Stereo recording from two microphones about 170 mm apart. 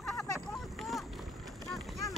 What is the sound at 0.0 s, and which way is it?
Vehicle, 5° left (ahead or behind).